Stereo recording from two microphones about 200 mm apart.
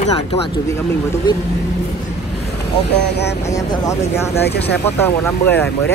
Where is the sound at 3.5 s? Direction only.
15° left (ahead or behind).